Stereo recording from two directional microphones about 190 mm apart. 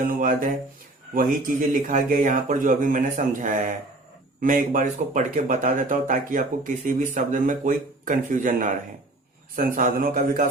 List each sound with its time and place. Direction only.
0.1 s speech: 45° right (ahead or behind)